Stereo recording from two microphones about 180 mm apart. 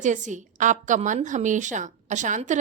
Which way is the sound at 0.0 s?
45° right (ahead or behind).